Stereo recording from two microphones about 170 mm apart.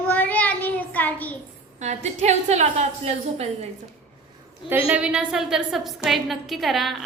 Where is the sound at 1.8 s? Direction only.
45° right (ahead or behind).